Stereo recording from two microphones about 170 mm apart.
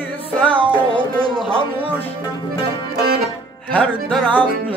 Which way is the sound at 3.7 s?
5° left (ahead or behind).